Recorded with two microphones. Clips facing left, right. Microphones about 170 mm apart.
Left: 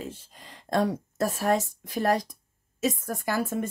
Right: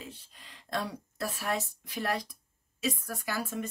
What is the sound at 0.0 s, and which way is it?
Speech, 45° left (ahead or behind).